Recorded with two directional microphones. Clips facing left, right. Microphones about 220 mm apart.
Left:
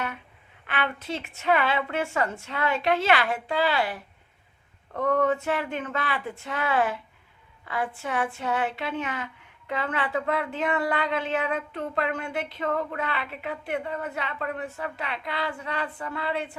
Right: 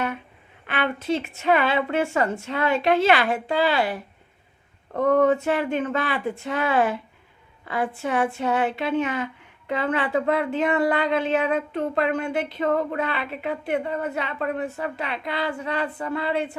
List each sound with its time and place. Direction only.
0.7 s a woman's voice: 20° right (ahead or behind)
4.9 s a woman's voice: 30° right (ahead or behind)
12.6 s a woman's voice: 35° right (ahead or behind)